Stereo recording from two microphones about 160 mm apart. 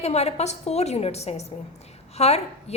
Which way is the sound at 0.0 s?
40° left (ahead or behind).